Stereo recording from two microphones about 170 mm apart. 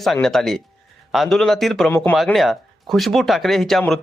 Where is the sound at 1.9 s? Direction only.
15° left (ahead or behind).